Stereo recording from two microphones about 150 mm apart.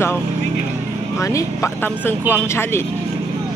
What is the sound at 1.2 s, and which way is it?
Speech, 20° left (ahead or behind).